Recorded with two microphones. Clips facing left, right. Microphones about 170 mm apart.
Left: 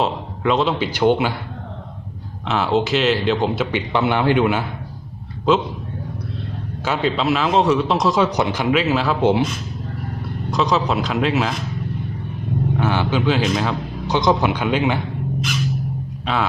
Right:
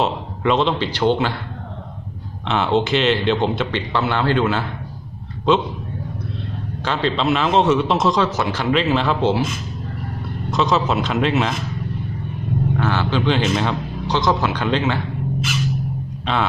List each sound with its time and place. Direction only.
0.0 s a man's voice: centre (ahead or behind)
2.4 s speech: centre (ahead or behind)
5.5 s speech: centre (ahead or behind)
6.8 s speech: 5° left (ahead or behind)
8.3 s a man's voice: 20° left (ahead or behind)
8.7 s speech: 5° left (ahead or behind)
10.5 s speech: centre (ahead or behind)
12.7 s a man's voice: 15° left (ahead or behind)
14.2 s a man's voice: 15° left (ahead or behind)
16.2 s speech: centre (ahead or behind)